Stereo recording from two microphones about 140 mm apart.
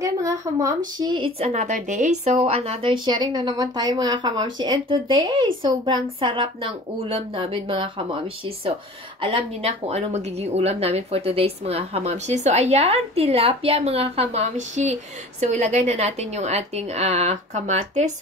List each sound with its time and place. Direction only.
0.0 s speech: 25° right (ahead or behind)
1.4 s speech: 55° right (ahead or behind)